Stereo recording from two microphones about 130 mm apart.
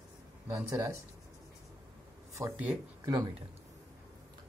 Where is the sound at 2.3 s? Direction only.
15° right (ahead or behind).